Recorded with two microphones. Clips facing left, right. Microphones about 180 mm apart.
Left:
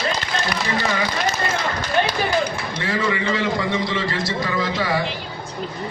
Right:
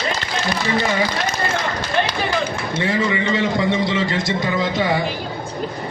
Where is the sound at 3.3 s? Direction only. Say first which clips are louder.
Right 3 dB; 25° right (ahead or behind).